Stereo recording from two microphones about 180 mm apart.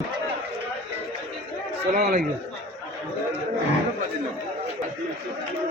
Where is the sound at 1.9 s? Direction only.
55° right (ahead or behind).